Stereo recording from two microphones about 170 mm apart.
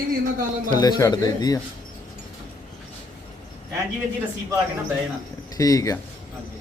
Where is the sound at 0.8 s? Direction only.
20° left (ahead or behind).